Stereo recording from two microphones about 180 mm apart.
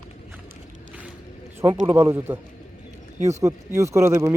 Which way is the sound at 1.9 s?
15° right (ahead or behind).